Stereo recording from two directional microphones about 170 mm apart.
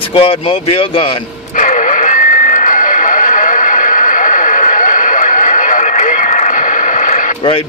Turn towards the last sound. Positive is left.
turn(degrees=50)  # may be behind; listen again after turning